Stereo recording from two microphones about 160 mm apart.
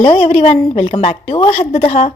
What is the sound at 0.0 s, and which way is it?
A woman's voice, 35° left (ahead or behind).